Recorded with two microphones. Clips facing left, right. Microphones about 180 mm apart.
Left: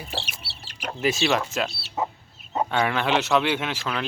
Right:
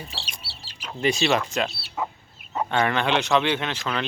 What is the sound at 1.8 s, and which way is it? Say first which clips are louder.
Chicken: left 2 dB; 25° left (ahead or behind).